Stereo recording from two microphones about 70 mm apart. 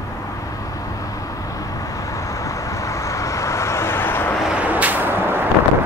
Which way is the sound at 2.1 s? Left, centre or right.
Left.